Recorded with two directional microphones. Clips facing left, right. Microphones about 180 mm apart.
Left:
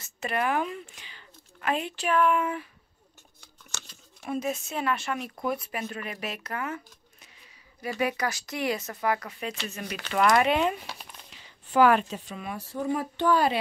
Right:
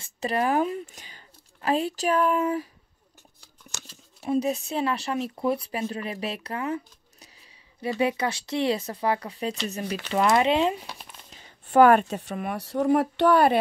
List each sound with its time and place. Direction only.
0.0 s speech: 35° right (ahead or behind)
3.3 s a sound: 10° right (ahead or behind)
4.2 s speech: 30° right (ahead or behind)
10.9 s crumpling: centre (ahead or behind)
11.3 s speech: 50° right (ahead or behind)